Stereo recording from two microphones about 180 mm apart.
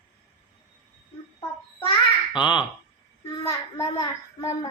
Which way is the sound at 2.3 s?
25° left (ahead or behind).